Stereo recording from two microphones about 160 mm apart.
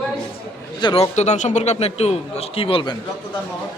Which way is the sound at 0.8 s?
35° left (ahead or behind).